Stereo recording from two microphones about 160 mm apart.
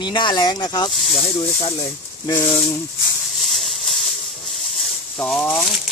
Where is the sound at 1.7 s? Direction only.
25° left (ahead or behind).